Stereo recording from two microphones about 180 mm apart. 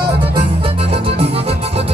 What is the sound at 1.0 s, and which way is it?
Music, 35° right (ahead or behind).